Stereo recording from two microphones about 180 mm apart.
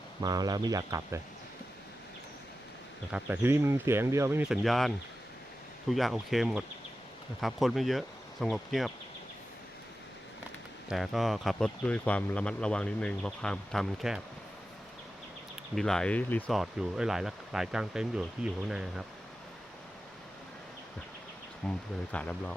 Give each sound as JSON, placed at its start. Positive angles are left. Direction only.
{"t": 0.2, "sound": "speech", "side_deg": -20}
{"t": 3.1, "sound": "speech", "side_deg": -10}
{"t": 5.9, "sound": "speech", "side_deg": 0}
{"t": 10.8, "sound": "speech", "side_deg": 0}
{"t": 15.7, "sound": "speech", "side_deg": 5}
{"t": 21.6, "sound": "speech", "side_deg": 5}